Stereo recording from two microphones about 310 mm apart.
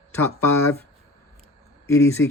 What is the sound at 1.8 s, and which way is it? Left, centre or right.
Speech, centre.